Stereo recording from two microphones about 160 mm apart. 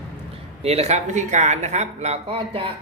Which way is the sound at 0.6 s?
40° right (ahead or behind).